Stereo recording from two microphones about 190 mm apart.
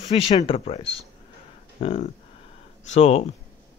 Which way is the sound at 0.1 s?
30° left (ahead or behind).